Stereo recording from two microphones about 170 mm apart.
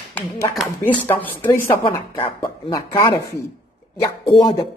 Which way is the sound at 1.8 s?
30° left (ahead or behind).